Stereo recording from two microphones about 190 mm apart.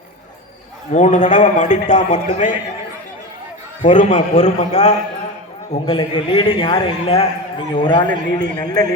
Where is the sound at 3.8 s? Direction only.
40° left (ahead or behind).